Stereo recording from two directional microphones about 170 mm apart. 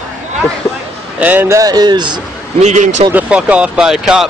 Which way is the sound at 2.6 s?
40° right (ahead or behind).